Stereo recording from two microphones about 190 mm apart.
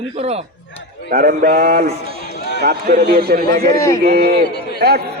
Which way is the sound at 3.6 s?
15° left (ahead or behind).